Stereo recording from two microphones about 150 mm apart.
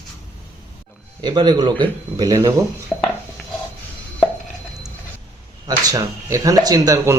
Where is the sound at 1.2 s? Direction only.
30° right (ahead or behind).